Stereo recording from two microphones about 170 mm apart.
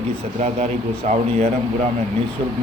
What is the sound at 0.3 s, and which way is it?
Speech, 40° right (ahead or behind).